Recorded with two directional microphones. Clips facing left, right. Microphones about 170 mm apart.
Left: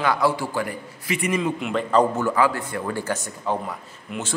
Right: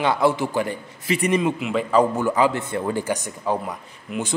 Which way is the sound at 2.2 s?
15° right (ahead or behind).